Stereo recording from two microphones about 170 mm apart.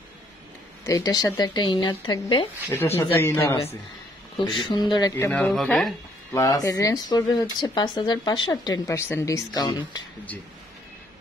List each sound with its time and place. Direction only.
0.8 s speech: 20° left (ahead or behind)
3.2 s speech: 15° left (ahead or behind)
4.4 s speech: 30° left (ahead or behind)
5.1 s speech: 10° left (ahead or behind)
6.3 s speech: 20° left (ahead or behind)